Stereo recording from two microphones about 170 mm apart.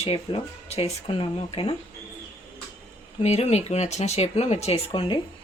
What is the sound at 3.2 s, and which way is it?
Speech, 40° left (ahead or behind).